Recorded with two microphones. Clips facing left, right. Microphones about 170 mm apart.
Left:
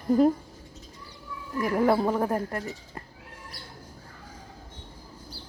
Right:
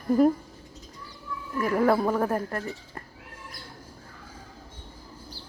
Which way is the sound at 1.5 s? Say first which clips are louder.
Even; 15° left (ahead or behind).